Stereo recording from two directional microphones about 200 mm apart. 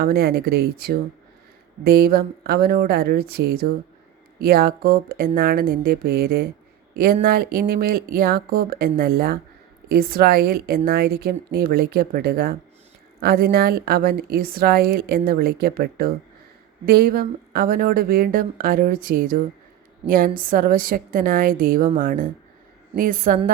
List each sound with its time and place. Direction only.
0.0 s a woman's voice: 50° right (ahead or behind)